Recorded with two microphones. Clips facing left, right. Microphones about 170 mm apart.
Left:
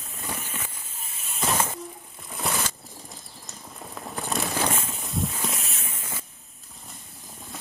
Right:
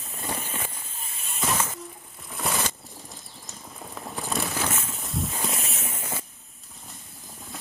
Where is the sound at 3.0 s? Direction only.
Centre (ahead or behind).